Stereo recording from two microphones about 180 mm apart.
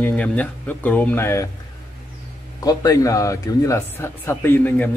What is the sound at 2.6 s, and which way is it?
Speech, 20° left (ahead or behind).